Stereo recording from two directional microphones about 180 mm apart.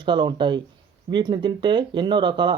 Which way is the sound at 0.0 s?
25° right (ahead or behind).